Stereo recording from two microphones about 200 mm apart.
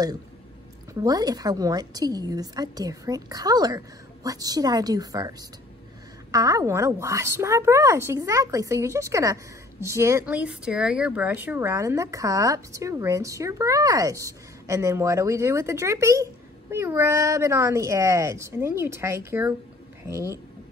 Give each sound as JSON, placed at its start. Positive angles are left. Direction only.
{"t": 0.9, "sound": "a woman's voice", "side_deg": -20}
{"t": 6.3, "sound": "speech", "side_deg": -15}